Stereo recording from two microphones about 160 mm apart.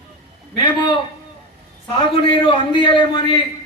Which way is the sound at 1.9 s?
30° left (ahead or behind).